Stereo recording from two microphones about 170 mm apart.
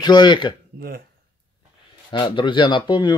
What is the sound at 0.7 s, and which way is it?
Speech, 65° right (ahead or behind).